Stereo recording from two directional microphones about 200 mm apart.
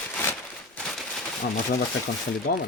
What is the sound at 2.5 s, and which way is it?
Speech, 45° left (ahead or behind).